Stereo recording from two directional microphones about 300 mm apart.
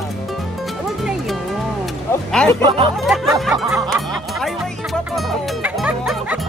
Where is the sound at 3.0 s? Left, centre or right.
Centre.